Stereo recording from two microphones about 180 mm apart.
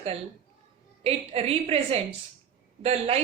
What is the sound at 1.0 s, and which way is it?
A woman's voice, 35° right (ahead or behind).